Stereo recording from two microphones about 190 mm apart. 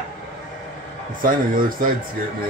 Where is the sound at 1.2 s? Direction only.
45° right (ahead or behind).